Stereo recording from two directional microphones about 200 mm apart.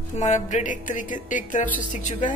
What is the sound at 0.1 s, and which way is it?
A woman's voice, 35° left (ahead or behind).